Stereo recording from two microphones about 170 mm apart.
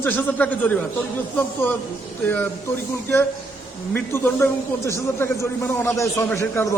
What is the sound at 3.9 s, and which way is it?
A man's voice, 15° left (ahead or behind).